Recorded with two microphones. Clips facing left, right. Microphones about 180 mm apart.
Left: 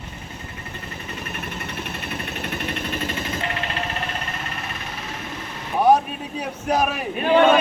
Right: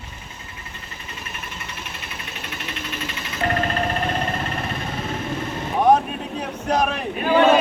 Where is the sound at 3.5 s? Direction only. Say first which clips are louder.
Right 6 dB; 45° right (ahead or behind).